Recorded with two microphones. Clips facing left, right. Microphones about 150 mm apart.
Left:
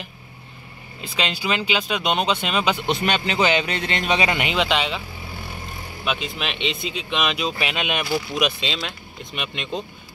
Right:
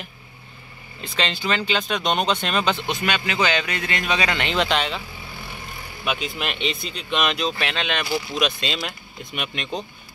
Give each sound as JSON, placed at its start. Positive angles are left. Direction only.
{"t": 1.0, "sound": "speech", "side_deg": 5}
{"t": 2.9, "sound": "a man's voice", "side_deg": 25}
{"t": 4.5, "sound": "speech", "side_deg": 0}
{"t": 6.0, "sound": "speech", "side_deg": 0}